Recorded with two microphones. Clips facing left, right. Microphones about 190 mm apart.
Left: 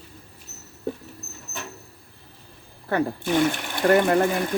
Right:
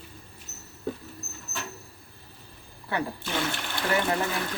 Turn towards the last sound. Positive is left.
turn(degrees=50)  # may be behind; listen again after turning